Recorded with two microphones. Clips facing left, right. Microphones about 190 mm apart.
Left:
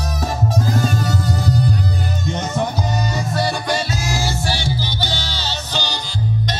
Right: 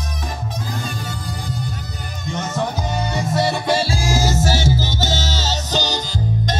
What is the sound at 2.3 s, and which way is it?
Music, 20° left (ahead or behind).